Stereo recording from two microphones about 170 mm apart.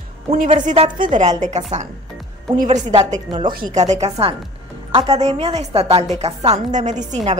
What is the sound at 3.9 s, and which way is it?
A woman's voice, 40° right (ahead or behind).